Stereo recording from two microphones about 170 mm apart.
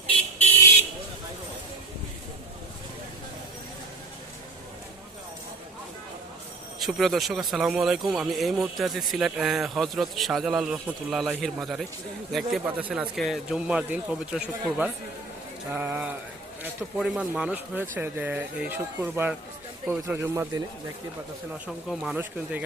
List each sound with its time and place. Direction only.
6.7 s speech: centre (ahead or behind); by 20.7 s 20° right (ahead or behind)
21.8 s speech: 5° right (ahead or behind)